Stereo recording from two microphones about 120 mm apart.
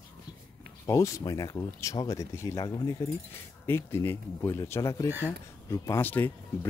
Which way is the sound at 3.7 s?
20° left (ahead or behind).